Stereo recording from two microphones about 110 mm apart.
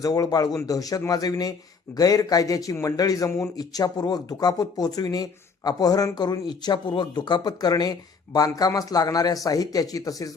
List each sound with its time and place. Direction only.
0.0 s speech: 35° left (ahead or behind)
3.6 s speech: 35° left (ahead or behind)